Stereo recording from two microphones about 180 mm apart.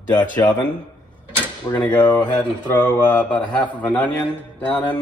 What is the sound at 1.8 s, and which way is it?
Speech, 5° left (ahead or behind).